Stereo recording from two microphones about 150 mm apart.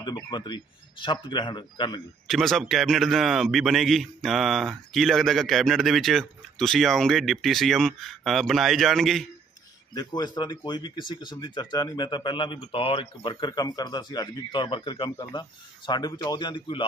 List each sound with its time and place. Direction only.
0.0 s speech: 30° left (ahead or behind)
2.2 s a man's voice: centre (ahead or behind)
9.9 s speech: 25° left (ahead or behind)